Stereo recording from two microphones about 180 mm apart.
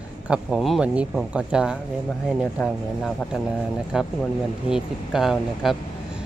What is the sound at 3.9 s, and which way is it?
Speech, 5° right (ahead or behind).